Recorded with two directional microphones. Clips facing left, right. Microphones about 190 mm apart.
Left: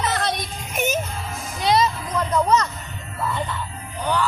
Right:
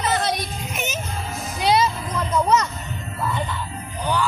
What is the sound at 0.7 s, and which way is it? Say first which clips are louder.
Music: left 8 dB; 50° left (ahead or behind).